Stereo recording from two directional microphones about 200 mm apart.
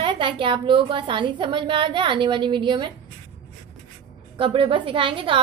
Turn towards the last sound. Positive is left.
turn(degrees=-25)  # may be behind; listen again after turning